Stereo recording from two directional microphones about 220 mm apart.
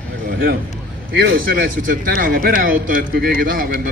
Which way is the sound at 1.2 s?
40° right (ahead or behind).